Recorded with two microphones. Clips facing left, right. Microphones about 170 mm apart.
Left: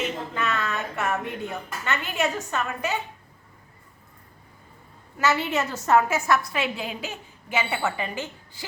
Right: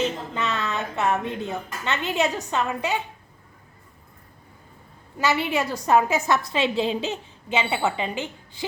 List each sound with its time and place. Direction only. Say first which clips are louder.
0.0 s a sound: right 2 dB; 25° right (ahead or behind)
1.8 s a woman's voice: right 2 dB; 20° right (ahead or behind)
5.1 s a woman's voice: right 1 dB; 15° right (ahead or behind)